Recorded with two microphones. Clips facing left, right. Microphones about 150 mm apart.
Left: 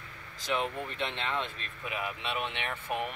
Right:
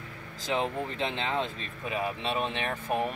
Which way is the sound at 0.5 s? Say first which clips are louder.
Right 3 dB; 30° right (ahead or behind).